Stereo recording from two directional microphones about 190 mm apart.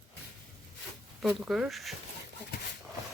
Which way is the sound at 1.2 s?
5° right (ahead or behind).